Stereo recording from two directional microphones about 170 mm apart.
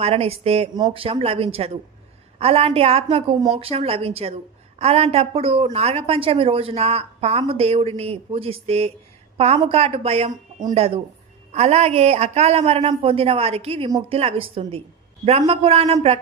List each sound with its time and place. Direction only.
0.0 s a woman's voice: 35° right (ahead or behind)